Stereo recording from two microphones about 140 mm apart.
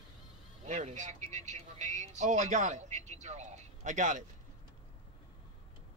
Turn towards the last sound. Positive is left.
turn(degrees=-65)  # may be behind; listen again after turning